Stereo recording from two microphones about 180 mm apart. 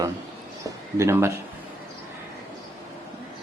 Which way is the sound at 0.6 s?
15° right (ahead or behind).